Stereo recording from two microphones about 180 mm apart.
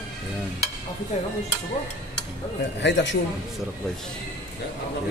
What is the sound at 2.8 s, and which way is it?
Speech, 80° left.